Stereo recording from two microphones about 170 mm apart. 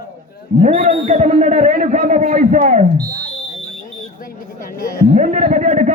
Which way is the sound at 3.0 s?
20° right (ahead or behind).